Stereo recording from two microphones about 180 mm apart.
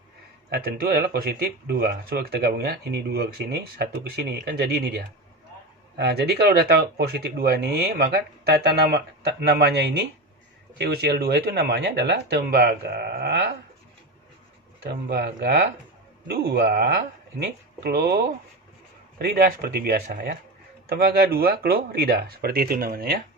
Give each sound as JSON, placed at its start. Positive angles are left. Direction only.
{"t": 0.5, "sound": "speech", "side_deg": -55}
{"t": 14.8, "sound": "speech", "side_deg": -65}
{"t": 19.2, "sound": "speech", "side_deg": -55}